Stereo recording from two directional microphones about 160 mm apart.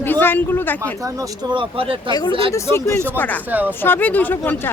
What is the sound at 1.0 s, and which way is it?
Speech, 25° right (ahead or behind).